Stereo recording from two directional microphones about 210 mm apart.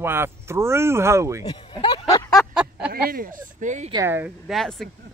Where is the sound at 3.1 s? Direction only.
45° right (ahead or behind).